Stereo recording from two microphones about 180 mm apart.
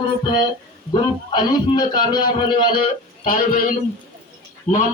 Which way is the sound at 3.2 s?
50° left (ahead or behind).